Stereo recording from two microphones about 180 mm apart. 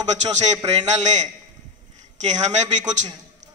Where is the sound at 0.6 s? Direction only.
40° right (ahead or behind).